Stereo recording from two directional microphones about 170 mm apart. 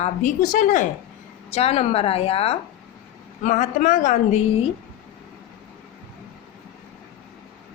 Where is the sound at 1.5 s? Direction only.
35° left (ahead or behind).